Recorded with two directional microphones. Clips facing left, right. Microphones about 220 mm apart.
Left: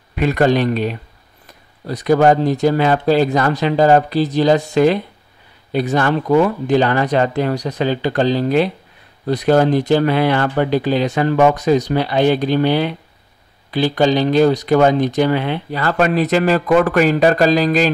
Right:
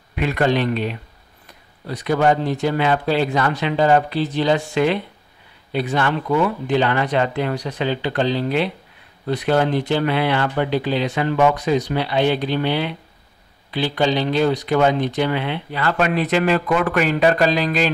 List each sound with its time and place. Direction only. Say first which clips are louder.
0.1 s speech: left 4 dB; 40° left (ahead or behind)